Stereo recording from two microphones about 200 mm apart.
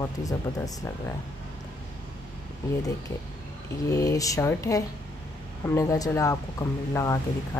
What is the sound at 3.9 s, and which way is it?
Speech, 15° left (ahead or behind).